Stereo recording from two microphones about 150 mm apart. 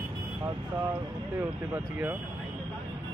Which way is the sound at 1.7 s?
15° right (ahead or behind).